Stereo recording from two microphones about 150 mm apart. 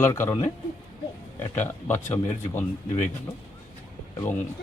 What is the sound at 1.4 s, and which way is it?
Speech, 15° left (ahead or behind).